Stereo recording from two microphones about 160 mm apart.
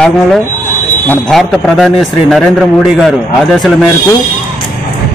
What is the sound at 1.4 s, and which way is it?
A man's voice, centre (ahead or behind).